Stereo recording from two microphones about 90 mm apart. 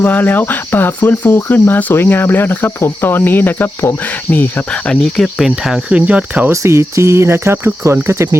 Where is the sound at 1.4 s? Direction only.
25° left (ahead or behind).